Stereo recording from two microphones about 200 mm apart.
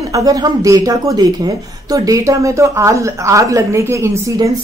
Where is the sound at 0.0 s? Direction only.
15° right (ahead or behind).